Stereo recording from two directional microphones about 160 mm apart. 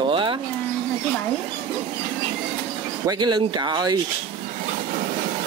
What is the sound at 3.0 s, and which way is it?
Speech, 30° right (ahead or behind).